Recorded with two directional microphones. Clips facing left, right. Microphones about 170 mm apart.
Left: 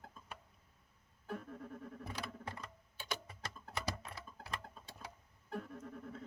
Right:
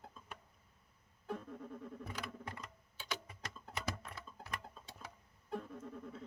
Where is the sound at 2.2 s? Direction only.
30° left (ahead or behind).